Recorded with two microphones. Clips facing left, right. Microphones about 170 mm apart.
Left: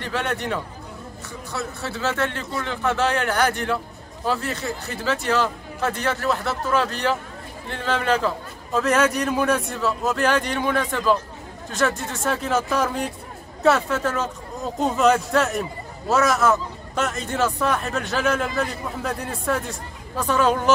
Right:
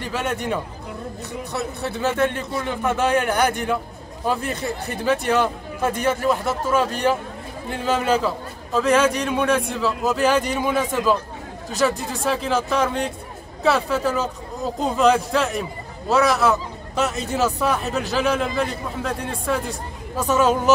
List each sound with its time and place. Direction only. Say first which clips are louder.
0.0 s a man's voice: right 1 dB; 10° right (ahead or behind)
20.2 s speech: right 2 dB; 10° right (ahead or behind)